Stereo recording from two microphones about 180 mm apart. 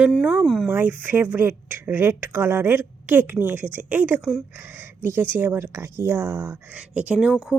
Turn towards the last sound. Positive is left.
turn(degrees=0)  # may be behind; listen again after turning